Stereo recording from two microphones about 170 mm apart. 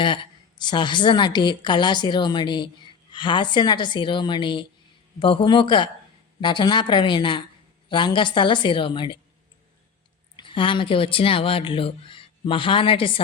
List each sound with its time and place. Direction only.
0.0 s a woman's voice: 30° left (ahead or behind)
10.3 s speech: 30° left (ahead or behind)